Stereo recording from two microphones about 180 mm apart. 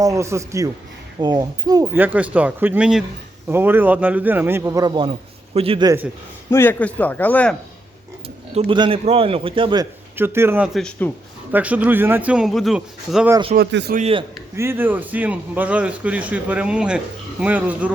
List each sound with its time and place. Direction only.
0.0 s a man's voice: 15° right (ahead or behind)
6.5 s speech: 10° left (ahead or behind)
8.5 s a man's voice: 30° right (ahead or behind)
10.2 s a man's voice: 10° right (ahead or behind)
10.8 s speech: 5° left (ahead or behind)
11.5 s a man's voice: 10° right (ahead or behind)
13.6 s speech: 70° right (ahead or behind)
14.5 s a man's voice: 15° right (ahead or behind)